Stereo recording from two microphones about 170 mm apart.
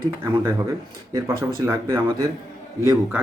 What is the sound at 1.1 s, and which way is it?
Speech, 25° right (ahead or behind).